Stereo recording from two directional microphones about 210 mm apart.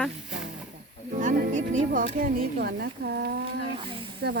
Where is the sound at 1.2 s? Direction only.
35° right (ahead or behind); by 4.4 s 50° right (ahead or behind).